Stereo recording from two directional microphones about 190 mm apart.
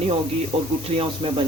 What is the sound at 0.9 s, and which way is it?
Speech, 30° right (ahead or behind).